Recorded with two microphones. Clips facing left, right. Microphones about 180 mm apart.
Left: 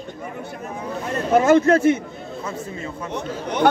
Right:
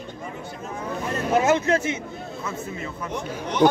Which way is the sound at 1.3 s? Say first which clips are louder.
Left 6 dB; 50° left (ahead or behind).